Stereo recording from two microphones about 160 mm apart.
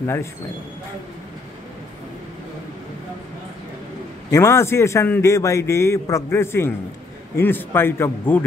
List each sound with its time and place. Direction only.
0.0 s a man's voice: 15° left (ahead or behind)
4.3 s a man's voice: 20° left (ahead or behind)